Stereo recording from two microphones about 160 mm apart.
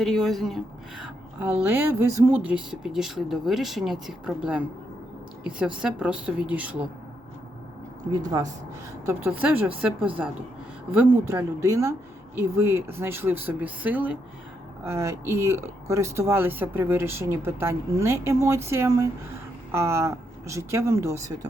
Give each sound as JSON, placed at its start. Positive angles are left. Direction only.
{"t": 0.0, "sound": "speech", "side_deg": 0}
{"t": 8.1, "sound": "speech", "side_deg": -20}
{"t": 9.4, "sound": "speech", "side_deg": -10}